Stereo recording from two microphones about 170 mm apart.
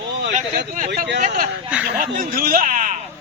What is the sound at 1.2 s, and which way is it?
A man's voice, 50° right (ahead or behind).